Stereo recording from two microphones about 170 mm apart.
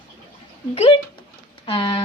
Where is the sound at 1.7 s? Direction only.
30° left (ahead or behind).